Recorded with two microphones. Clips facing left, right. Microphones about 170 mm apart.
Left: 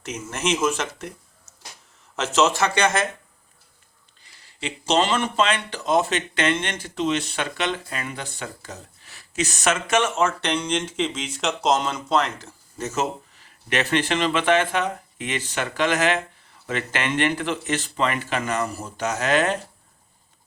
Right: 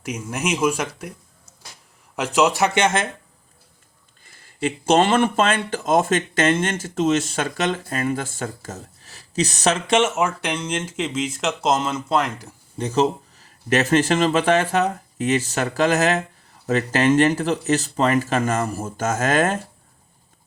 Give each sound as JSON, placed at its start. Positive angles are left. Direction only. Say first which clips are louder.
{"t": 0.0, "sound": "speech", "louder": "right 1 dB", "side_deg": -10}
{"t": 4.2, "sound": "speech", "louder": "right 9 dB", "side_deg": -50}
{"t": 10.0, "sound": "speech", "louder": "right 2 dB", "side_deg": -15}
{"t": 12.7, "sound": "speech", "louder": "right 6 dB", "side_deg": -30}